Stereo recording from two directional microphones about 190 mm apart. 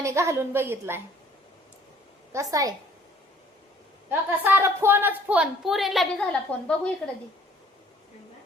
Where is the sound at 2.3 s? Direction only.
15° right (ahead or behind).